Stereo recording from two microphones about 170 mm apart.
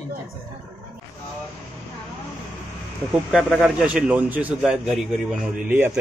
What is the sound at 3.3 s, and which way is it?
A man's voice, centre (ahead or behind).